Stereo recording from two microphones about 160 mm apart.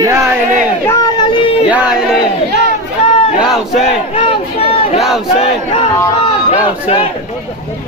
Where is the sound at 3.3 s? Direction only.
Centre (ahead or behind).